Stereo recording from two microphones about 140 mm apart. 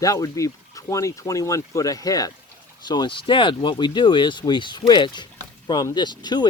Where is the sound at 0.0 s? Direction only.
25° left (ahead or behind).